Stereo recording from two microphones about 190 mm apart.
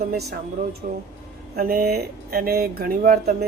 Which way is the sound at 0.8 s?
45° right (ahead or behind).